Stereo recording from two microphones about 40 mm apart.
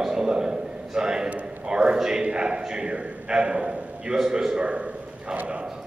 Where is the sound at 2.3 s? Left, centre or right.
Right.